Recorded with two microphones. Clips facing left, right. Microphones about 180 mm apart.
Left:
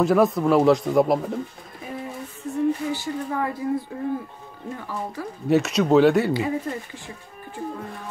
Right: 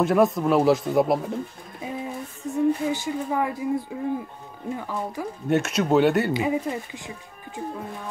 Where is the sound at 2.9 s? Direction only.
15° right (ahead or behind).